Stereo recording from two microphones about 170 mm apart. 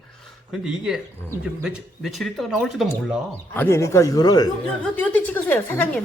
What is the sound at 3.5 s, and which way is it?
Speech, 15° left (ahead or behind).